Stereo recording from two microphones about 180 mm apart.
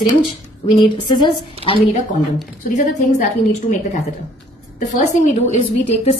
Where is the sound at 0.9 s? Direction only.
25° left (ahead or behind).